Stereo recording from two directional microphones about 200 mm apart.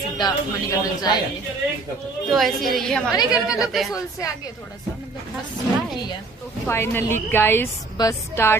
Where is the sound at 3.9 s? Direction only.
15° left (ahead or behind).